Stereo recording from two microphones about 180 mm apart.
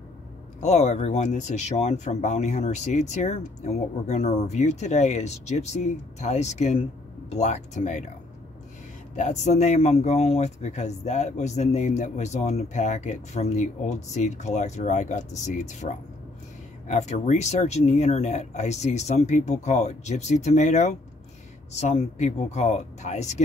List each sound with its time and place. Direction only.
0.6 s speech: 40° left (ahead or behind)
9.1 s speech: 40° left (ahead or behind)